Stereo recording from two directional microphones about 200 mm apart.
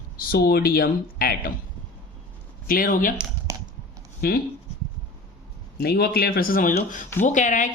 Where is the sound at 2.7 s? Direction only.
45° left (ahead or behind).